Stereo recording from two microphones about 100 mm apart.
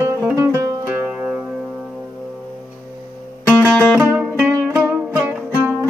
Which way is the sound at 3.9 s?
20° right (ahead or behind).